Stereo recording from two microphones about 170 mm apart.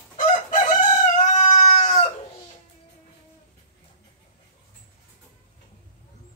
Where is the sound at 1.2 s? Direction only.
45° left (ahead or behind).